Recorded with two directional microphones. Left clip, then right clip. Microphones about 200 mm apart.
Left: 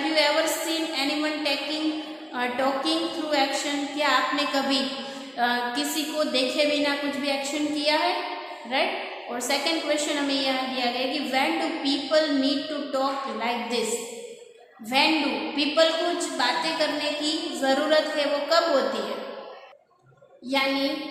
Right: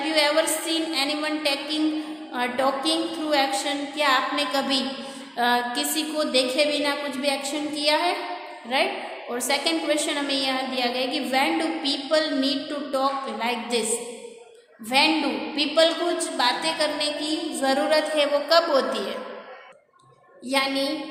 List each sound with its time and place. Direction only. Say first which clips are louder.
0.1 s a sound: right 2 dB; 30° right (ahead or behind)
2.3 s a woman's voice: right 2 dB; 30° right (ahead or behind)
14.8 s a woman's voice: right 1 dB; 30° right (ahead or behind)
20.5 s a woman's voice: right 1 dB; 40° right (ahead or behind)